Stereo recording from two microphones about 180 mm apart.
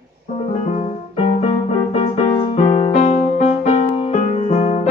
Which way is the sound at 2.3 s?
35° left (ahead or behind).